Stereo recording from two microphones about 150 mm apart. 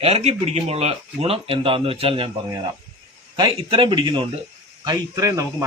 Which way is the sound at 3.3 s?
35° right (ahead or behind).